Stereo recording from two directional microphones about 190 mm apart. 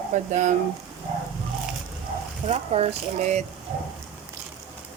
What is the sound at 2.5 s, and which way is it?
Speech, 35° right (ahead or behind).